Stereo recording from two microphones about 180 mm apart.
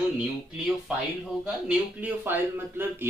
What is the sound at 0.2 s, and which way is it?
Speech, 5° right (ahead or behind).